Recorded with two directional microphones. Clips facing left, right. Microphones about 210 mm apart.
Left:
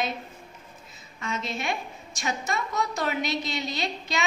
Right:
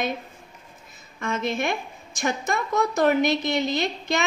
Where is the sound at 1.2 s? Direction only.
50° right (ahead or behind).